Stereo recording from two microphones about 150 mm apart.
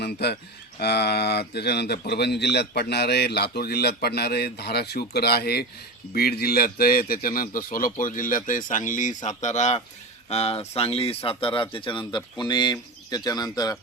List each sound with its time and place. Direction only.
0.0 s a man's voice: 90° left; by 13.7 s 25° left (ahead or behind)